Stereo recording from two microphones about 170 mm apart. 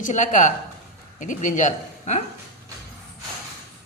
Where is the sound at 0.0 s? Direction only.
45° left (ahead or behind).